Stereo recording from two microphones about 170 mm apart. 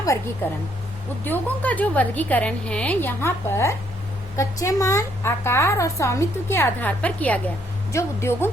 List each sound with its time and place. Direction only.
1.2 s a woman's voice: 10° left (ahead or behind)